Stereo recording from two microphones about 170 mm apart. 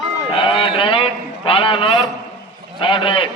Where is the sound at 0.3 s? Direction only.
30° left (ahead or behind).